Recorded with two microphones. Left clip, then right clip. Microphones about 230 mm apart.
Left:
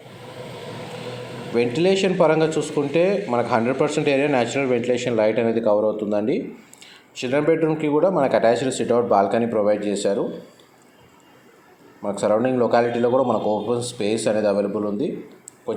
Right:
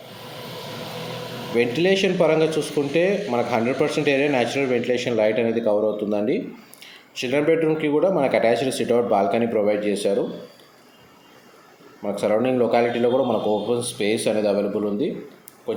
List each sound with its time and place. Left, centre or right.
1.5 s speech: centre
12.0 s speech: centre